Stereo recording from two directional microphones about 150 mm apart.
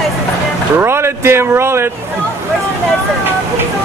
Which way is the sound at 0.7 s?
15° right (ahead or behind).